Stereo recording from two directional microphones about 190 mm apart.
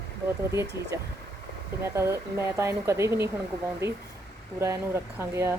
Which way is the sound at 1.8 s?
15° right (ahead or behind).